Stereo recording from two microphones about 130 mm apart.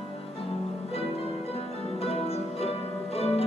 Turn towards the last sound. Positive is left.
turn(degrees=50)  # may be behind; listen again after turning